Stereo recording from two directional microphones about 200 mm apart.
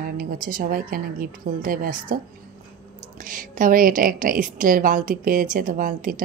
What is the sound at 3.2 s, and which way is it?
Speech, 40° right (ahead or behind).